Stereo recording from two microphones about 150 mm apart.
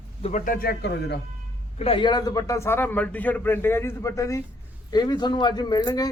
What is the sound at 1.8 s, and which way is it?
A man's voice, 35° left (ahead or behind).